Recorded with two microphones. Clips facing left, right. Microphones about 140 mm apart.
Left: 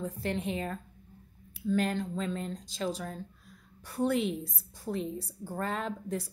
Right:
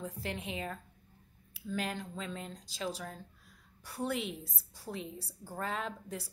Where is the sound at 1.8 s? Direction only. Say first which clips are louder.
Left 5 dB; 5° right (ahead or behind).